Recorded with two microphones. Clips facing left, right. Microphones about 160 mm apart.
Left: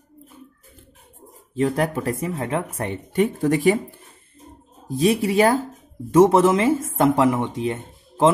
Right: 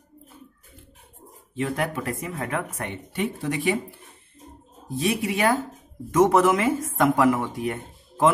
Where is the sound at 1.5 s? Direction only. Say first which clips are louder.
Left 5 dB; 35° left (ahead or behind).